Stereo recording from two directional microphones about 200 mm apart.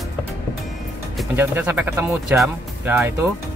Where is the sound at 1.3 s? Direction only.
10° right (ahead or behind).